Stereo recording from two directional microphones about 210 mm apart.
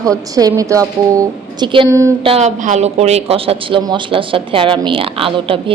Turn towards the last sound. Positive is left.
turn(degrees=-25)  # may be behind; listen again after turning